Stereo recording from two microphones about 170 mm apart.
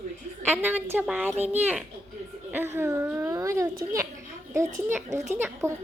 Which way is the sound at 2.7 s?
15° right (ahead or behind).